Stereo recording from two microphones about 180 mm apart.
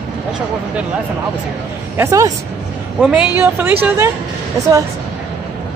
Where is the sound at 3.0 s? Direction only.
5° right (ahead or behind).